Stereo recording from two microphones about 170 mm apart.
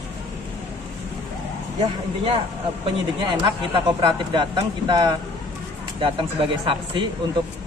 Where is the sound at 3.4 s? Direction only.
30° right (ahead or behind).